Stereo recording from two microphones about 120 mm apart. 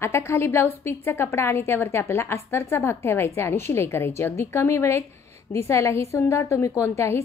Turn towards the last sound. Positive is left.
turn(degrees=20)  # may be behind; listen again after turning